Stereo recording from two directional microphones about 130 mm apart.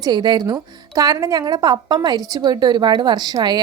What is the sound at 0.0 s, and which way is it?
A woman's voice, 35° right (ahead or behind).